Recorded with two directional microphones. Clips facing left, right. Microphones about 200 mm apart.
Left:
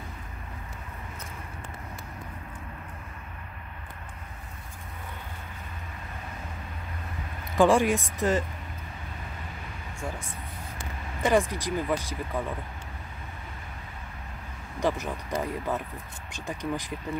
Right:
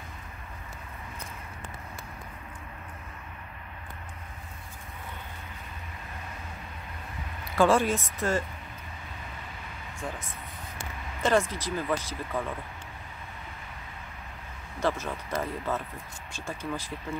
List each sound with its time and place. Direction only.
7.5 s speech: 15° left (ahead or behind)
9.9 s speech: 10° left (ahead or behind)
11.2 s speech: 15° left (ahead or behind)
14.8 s speech: 15° left (ahead or behind)